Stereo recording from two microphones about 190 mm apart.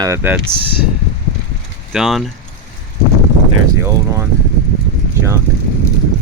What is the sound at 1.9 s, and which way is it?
Speech, centre (ahead or behind).